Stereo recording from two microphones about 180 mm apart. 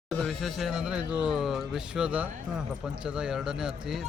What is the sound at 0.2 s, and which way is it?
Speech, centre (ahead or behind).